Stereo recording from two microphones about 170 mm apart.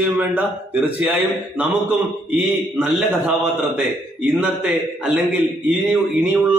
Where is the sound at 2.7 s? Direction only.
10° right (ahead or behind).